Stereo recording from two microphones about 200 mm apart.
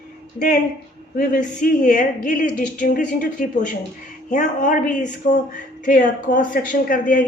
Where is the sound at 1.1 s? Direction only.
45° left (ahead or behind).